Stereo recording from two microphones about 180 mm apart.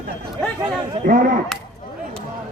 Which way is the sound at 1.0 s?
50° right (ahead or behind).